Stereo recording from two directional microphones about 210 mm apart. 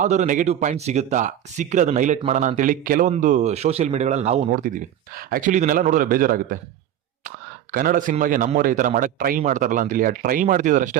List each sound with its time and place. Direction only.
0.0 s speech: 35° right (ahead or behind)